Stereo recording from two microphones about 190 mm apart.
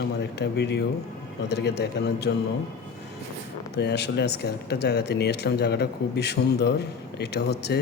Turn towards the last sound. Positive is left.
turn(degrees=60)  # may be behind; listen again after turning